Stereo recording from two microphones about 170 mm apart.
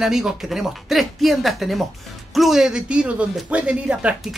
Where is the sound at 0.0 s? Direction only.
5° right (ahead or behind).